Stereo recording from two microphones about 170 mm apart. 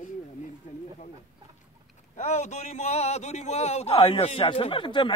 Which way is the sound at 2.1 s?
40° left (ahead or behind).